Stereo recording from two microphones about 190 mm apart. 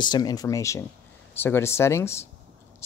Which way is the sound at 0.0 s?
20° left (ahead or behind).